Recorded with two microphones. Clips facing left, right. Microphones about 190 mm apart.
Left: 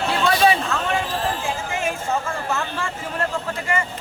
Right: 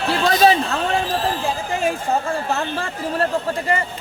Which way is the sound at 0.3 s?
35° right (ahead or behind).